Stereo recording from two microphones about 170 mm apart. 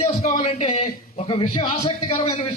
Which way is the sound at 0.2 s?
40° left (ahead or behind).